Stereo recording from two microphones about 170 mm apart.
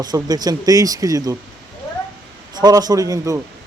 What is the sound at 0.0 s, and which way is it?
A man's voice, 25° right (ahead or behind).